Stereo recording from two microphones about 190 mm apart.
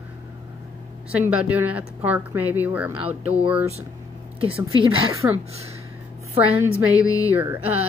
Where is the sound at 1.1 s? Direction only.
5° right (ahead or behind).